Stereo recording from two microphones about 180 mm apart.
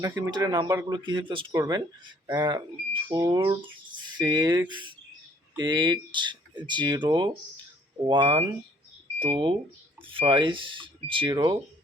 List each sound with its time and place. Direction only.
0.0 s speech: 20° right (ahead or behind)